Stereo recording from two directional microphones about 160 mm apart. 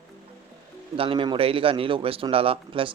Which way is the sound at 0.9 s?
35° right (ahead or behind).